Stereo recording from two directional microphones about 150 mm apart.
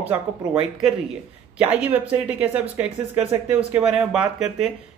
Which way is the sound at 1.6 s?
10° right (ahead or behind).